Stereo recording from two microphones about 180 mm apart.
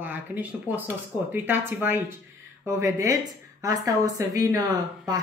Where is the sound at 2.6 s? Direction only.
15° right (ahead or behind).